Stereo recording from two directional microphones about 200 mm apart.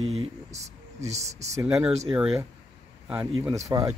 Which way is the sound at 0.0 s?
35° right (ahead or behind).